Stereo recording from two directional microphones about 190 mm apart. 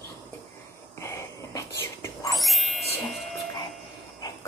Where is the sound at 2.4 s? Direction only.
Centre (ahead or behind).